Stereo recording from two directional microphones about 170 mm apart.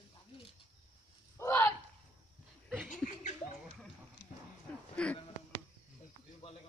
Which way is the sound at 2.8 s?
45° left (ahead or behind).